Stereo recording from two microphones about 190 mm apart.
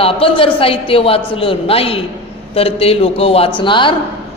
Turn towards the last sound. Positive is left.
turn(degrees=25)  # may be behind; listen again after turning